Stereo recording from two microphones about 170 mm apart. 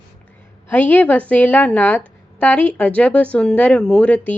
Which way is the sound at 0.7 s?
10° left (ahead or behind).